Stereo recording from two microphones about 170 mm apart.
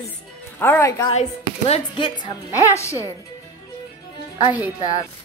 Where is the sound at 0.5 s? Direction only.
15° left (ahead or behind).